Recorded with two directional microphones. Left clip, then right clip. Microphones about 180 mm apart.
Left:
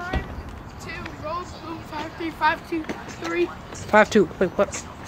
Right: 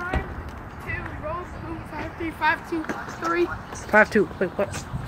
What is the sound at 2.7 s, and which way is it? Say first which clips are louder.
Speech: even; 40° left (ahead or behind).